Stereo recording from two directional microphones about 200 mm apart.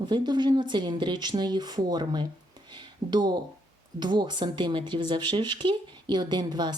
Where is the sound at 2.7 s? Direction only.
20° right (ahead or behind).